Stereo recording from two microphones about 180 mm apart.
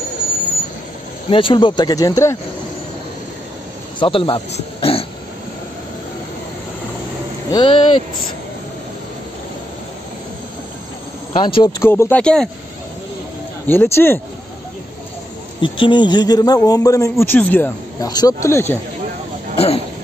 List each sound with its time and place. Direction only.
1.3 s a man's voice: 30° left (ahead or behind)
4.0 s speech: 30° left (ahead or behind)
7.5 s a man's voice: 30° left (ahead or behind)
11.3 s a man's voice: 25° left (ahead or behind)
11.9 s speech: 10° left (ahead or behind)
13.7 s speech: 15° left (ahead or behind)
15.6 s a man's voice: 25° left (ahead or behind); by 17.6 s 10° left (ahead or behind)
18.0 s speech: 20° left (ahead or behind)
19.5 s a sound: 35° left (ahead or behind)